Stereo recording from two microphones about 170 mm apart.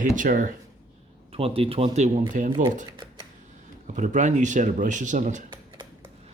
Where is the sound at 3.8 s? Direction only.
45° right (ahead or behind).